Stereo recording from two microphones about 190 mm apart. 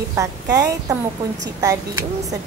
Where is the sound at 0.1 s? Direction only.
15° right (ahead or behind).